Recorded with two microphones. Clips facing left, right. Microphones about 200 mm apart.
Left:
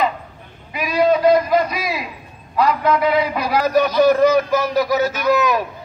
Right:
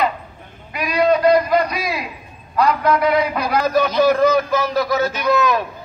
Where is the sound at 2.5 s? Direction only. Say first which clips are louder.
Even; centre (ahead or behind).